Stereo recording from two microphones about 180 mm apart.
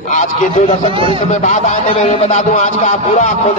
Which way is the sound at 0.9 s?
30° right (ahead or behind).